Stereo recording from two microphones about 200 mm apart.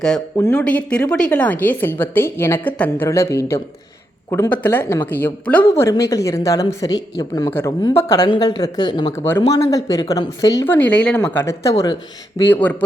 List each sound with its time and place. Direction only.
0.0 s speech: 10° left (ahead or behind); by 9.1 s 25° left (ahead or behind)
9.1 s speech: 10° left (ahead or behind)
10.8 s speech: 5° left (ahead or behind)